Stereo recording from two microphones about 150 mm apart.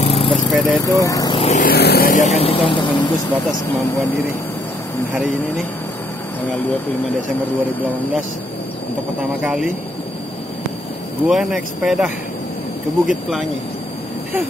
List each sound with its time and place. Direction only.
0.0 s vehicle: 40° left (ahead or behind)
0.5 s speech: centre (ahead or behind)
0.8 s speech: 20° left (ahead or behind)
1.4 s vehicle: 50° left (ahead or behind)
1.7 s speech: 90° left; by 3.1 s 35° left (ahead or behind)
9.4 s speech: 5° right (ahead or behind)
11.2 s speech: centre (ahead or behind)